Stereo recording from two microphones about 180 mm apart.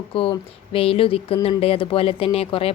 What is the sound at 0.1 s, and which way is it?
A woman's voice, 30° left (ahead or behind).